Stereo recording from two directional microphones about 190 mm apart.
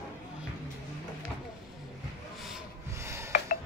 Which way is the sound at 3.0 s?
15° right (ahead or behind).